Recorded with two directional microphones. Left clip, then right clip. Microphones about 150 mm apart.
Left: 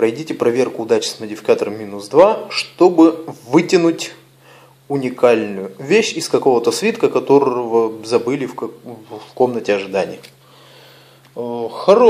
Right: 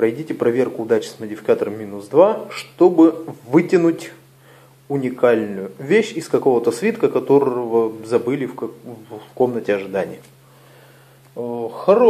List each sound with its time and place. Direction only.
0.0 s speech: 5° left (ahead or behind)
11.3 s speech: 15° left (ahead or behind)